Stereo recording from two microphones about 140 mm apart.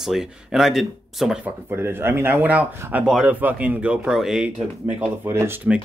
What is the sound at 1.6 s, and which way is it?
Speech, 15° right (ahead or behind).